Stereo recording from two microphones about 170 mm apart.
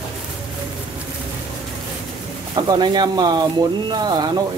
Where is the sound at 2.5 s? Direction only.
25° right (ahead or behind).